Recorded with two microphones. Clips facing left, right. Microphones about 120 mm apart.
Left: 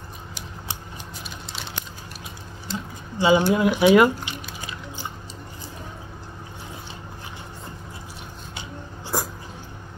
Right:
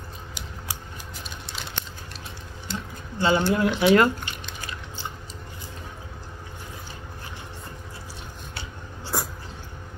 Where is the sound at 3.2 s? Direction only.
15° left (ahead or behind).